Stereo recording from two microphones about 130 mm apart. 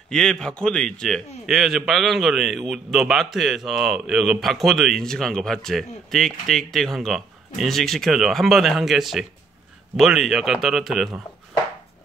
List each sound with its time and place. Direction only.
0.1 s speech: 5° left (ahead or behind)